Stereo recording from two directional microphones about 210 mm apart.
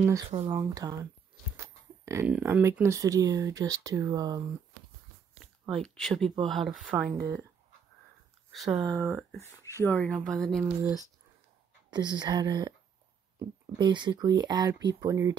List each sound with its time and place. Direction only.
0.0 s speech: 15° right (ahead or behind)
5.4 s a sound: centre (ahead or behind)
6.5 s speech: centre (ahead or behind)
8.5 s speech: centre (ahead or behind)
8.8 s speech: 15° right (ahead or behind)
9.4 s speech: 15° left (ahead or behind)
11.9 s speech: 20° right (ahead or behind)